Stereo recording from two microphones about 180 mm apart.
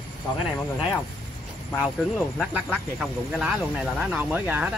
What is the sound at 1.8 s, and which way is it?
Speech, 5° right (ahead or behind).